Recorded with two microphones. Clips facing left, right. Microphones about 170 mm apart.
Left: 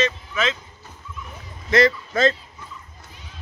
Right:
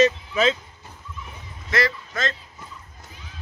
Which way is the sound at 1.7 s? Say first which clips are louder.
Left 7 dB; 25° left (ahead or behind).